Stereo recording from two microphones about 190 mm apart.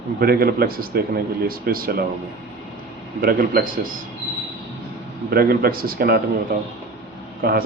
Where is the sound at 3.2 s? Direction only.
50° right (ahead or behind).